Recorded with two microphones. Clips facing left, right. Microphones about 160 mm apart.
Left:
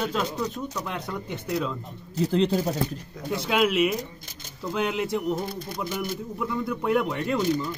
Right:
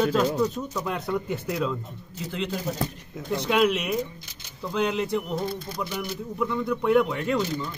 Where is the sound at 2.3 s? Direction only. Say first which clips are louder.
Left 7 dB; 35° left (ahead or behind).